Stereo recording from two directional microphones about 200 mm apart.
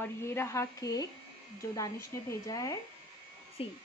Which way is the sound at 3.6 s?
30° left (ahead or behind).